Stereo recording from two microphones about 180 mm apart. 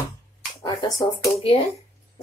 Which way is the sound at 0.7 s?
20° left (ahead or behind).